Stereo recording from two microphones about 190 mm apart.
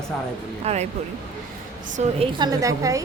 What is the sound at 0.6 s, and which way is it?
Speech, 35° right (ahead or behind).